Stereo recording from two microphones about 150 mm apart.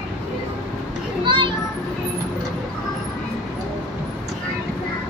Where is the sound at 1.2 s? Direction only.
35° right (ahead or behind).